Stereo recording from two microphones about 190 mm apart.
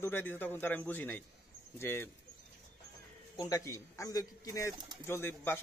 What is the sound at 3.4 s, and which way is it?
Speech, 20° left (ahead or behind).